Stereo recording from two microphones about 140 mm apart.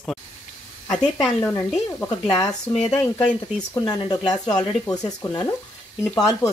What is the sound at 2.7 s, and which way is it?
Speech, 5° left (ahead or behind).